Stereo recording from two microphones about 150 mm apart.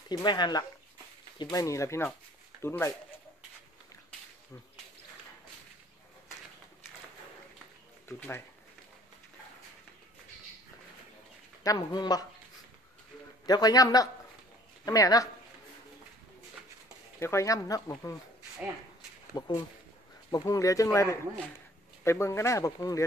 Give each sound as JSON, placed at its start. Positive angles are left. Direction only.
{"t": 0.1, "sound": "speech", "side_deg": 30}
{"t": 8.2, "sound": "speech", "side_deg": 15}
{"t": 11.6, "sound": "speech", "side_deg": 25}
{"t": 13.5, "sound": "speech", "side_deg": 25}
{"t": 17.2, "sound": "speech", "side_deg": 20}
{"t": 19.3, "sound": "speech", "side_deg": 25}